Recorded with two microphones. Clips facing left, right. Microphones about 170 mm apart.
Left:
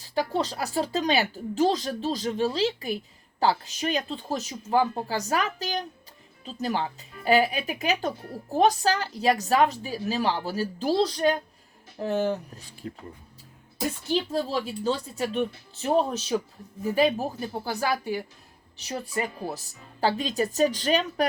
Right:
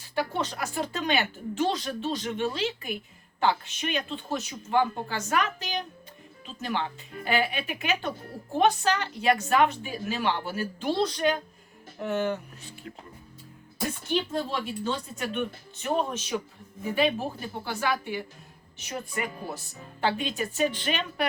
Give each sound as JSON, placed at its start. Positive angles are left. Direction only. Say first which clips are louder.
{"t": 0.0, "sound": "speech", "louder": "left 3 dB", "side_deg": 35}
{"t": 14.1, "sound": "speech", "louder": "left 2 dB", "side_deg": 35}